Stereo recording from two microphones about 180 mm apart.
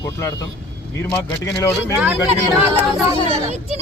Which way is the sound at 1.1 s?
20° left (ahead or behind).